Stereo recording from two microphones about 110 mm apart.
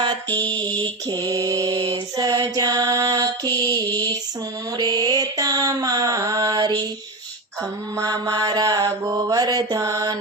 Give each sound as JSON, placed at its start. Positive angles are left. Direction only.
{"t": 0.8, "sound": "female singing", "side_deg": -35}
{"t": 4.8, "sound": "mantra", "side_deg": -40}
{"t": 7.9, "sound": "mantra", "side_deg": -35}